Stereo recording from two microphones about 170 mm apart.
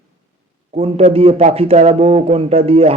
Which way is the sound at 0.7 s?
35° right (ahead or behind).